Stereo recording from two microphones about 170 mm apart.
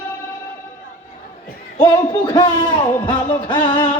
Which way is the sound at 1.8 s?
25° left (ahead or behind).